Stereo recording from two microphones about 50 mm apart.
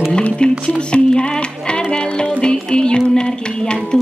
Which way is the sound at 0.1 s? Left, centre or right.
Centre.